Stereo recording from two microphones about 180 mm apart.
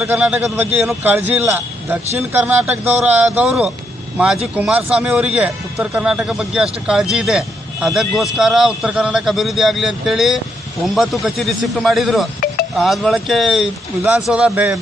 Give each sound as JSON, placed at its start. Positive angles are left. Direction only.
{"t": 0.0, "sound": "a man's voice", "side_deg": -10}